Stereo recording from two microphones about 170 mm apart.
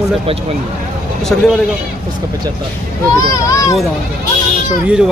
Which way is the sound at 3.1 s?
20° left (ahead or behind).